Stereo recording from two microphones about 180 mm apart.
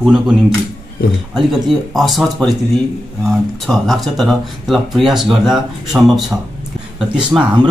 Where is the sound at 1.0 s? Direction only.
55° left (ahead or behind).